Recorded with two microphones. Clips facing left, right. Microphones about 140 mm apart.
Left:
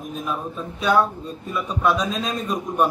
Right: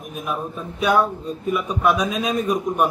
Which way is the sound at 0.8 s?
15° right (ahead or behind).